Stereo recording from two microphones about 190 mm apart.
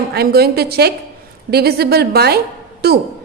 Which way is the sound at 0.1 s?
55° right (ahead or behind).